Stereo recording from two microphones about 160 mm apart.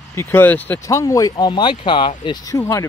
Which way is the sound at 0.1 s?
15° left (ahead or behind).